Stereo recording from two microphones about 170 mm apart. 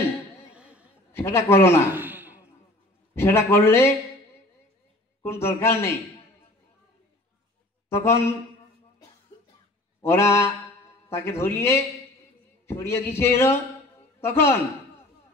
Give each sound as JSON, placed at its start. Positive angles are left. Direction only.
{"t": 0.5, "sound": "a sound", "side_deg": -5}
{"t": 1.1, "sound": "a man's voice", "side_deg": 15}
{"t": 2.0, "sound": "a sound", "side_deg": -10}
{"t": 3.2, "sound": "a man's voice", "side_deg": 15}
{"t": 5.2, "sound": "a man's voice", "side_deg": 15}
{"t": 7.9, "sound": "a man's voice", "side_deg": 15}
{"t": 10.0, "sound": "a man's voice", "side_deg": 15}